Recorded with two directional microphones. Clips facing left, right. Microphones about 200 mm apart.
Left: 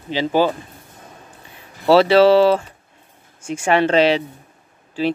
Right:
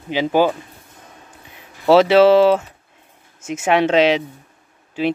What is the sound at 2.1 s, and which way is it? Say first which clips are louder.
Speech: right 1 dB; 10° right (ahead or behind).